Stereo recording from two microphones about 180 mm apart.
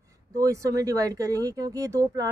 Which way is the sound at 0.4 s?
20° right (ahead or behind).